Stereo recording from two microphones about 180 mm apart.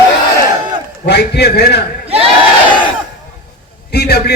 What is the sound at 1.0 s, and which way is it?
Speech, 65° left (ahead or behind).